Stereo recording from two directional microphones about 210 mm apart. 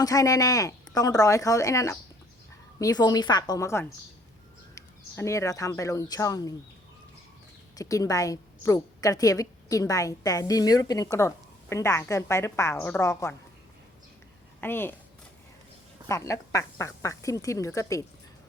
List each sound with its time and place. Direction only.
0.0 s a woman's voice: 15° left (ahead or behind)
7.8 s a woman's voice: 15° left (ahead or behind)
14.6 s a woman's voice: 10° left (ahead or behind)
16.0 s a woman's voice: 15° left (ahead or behind)